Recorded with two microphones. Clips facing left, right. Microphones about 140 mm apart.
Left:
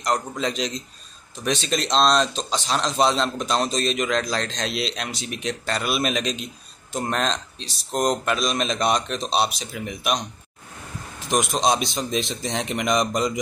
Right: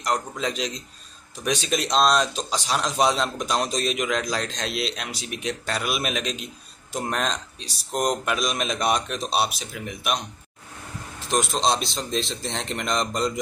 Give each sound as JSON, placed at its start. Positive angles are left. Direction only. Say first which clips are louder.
{"t": 0.0, "sound": "a man's voice", "louder": "left 2 dB", "side_deg": -5}
{"t": 11.2, "sound": "a man's voice", "louder": "left 2 dB", "side_deg": 15}